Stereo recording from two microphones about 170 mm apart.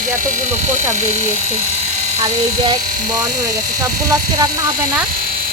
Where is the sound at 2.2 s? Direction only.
25° right (ahead or behind).